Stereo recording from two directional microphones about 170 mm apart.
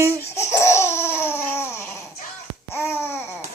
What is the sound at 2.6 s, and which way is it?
Babbling, 15° left (ahead or behind).